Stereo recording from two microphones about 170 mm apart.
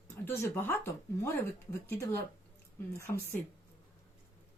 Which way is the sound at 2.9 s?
15° left (ahead or behind).